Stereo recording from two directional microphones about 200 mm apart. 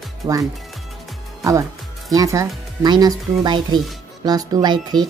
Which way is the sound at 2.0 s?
15° right (ahead or behind).